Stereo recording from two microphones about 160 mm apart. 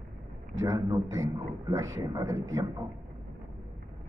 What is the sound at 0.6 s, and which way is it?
A man's voice, 20° right (ahead or behind).